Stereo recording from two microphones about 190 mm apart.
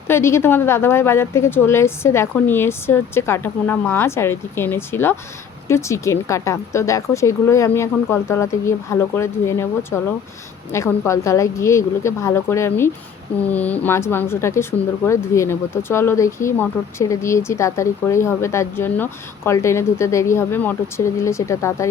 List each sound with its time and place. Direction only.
0.1 s a woman's voice: 15° left (ahead or behind)